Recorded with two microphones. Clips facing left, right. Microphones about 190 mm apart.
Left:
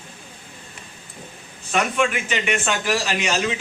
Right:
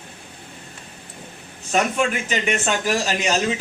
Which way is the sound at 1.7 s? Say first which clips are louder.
Right 1 dB; 35° right (ahead or behind).